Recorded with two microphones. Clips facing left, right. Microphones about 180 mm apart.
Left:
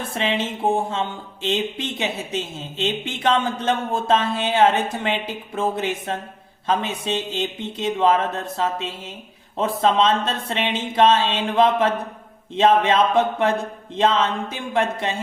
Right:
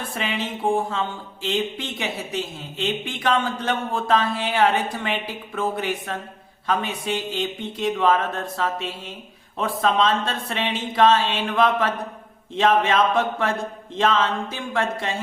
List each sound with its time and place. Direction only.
0.1 s speech: 25° left (ahead or behind)